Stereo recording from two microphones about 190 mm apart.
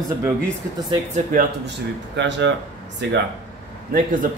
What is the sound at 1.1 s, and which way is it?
Speech, 45° right (ahead or behind).